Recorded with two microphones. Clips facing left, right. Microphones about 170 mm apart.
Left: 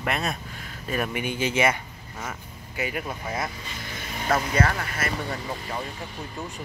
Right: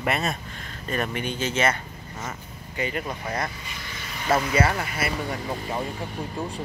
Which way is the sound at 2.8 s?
5° left (ahead or behind).